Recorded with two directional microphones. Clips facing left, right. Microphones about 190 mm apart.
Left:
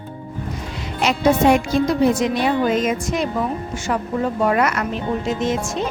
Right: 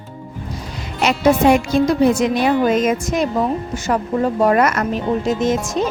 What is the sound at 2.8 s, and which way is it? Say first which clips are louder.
Speech: right 3 dB; 45° right (ahead or behind).